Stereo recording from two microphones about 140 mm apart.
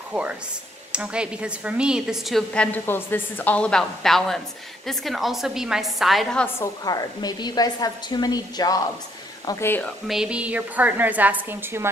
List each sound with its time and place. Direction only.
0.1 s a woman's voice: 10° right (ahead or behind)
6.4 s a woman's voice: 25° left (ahead or behind)
9.5 s speech: 15° left (ahead or behind)
10.0 s a woman's voice: 5° right (ahead or behind)